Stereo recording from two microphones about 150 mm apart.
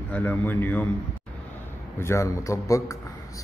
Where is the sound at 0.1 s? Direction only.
10° left (ahead or behind).